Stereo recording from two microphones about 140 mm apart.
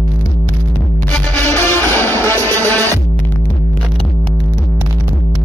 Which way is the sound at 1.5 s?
15° left (ahead or behind).